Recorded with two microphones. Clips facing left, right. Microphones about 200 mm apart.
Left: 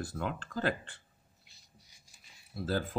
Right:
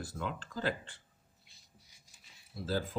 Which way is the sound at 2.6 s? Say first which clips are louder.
Left 2 dB; 60° left (ahead or behind).